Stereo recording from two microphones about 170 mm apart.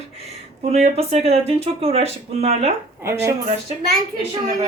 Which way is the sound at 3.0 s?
15° right (ahead or behind).